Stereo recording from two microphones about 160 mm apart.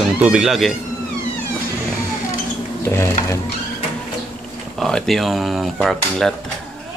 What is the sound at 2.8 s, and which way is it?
Speech, 15° left (ahead or behind).